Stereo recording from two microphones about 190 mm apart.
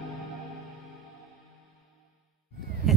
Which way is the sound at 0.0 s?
Centre (ahead or behind).